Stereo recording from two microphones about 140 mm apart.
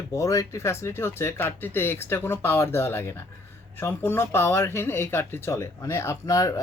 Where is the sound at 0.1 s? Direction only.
25° left (ahead or behind).